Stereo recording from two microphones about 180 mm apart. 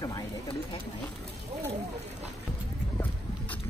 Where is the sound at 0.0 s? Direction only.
20° left (ahead or behind).